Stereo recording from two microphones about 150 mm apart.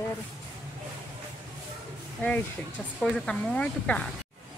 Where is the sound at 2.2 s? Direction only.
15° left (ahead or behind).